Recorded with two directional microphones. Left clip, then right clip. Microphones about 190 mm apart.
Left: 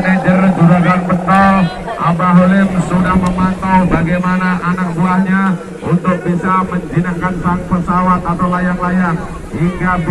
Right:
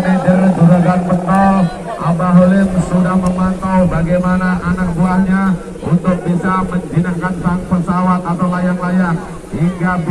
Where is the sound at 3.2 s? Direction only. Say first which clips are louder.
Left 2 dB; 45° right (ahead or behind).